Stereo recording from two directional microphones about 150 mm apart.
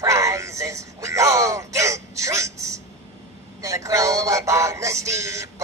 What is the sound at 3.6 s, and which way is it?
Music, 20° right (ahead or behind).